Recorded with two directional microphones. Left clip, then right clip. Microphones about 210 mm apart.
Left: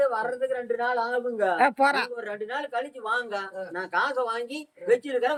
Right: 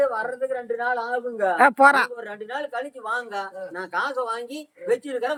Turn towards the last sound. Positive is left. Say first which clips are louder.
# left 1 dB
turn(degrees=-5)  # may be behind; listen again after turning